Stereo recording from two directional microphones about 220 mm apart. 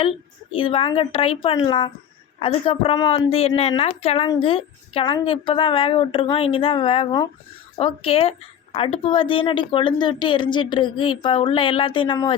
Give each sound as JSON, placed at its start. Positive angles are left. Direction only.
{"t": 0.0, "sound": "a woman's voice", "side_deg": 25}